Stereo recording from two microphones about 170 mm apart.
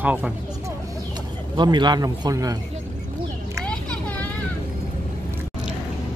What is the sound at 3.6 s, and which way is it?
Vehicle, 5° left (ahead or behind).